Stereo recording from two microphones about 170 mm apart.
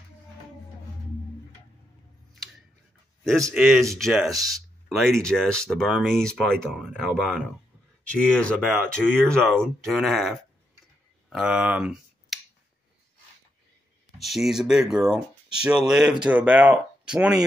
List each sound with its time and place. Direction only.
3.3 s speech: centre (ahead or behind)
4.3 s speech: 20° right (ahead or behind)
4.8 s speech: centre (ahead or behind)
14.1 s speech: centre (ahead or behind)